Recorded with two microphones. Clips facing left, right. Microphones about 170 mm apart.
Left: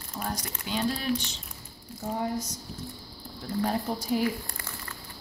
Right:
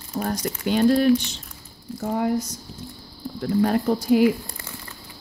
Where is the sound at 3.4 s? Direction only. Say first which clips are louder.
Right 8 dB; 70° right (ahead or behind).